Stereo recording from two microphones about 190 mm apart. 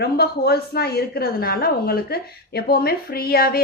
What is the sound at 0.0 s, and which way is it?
A woman's voice, 55° left (ahead or behind).